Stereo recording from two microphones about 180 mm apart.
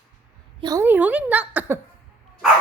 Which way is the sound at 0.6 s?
15° right (ahead or behind).